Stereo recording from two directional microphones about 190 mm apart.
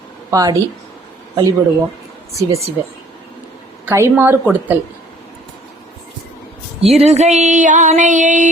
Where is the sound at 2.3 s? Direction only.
15° right (ahead or behind).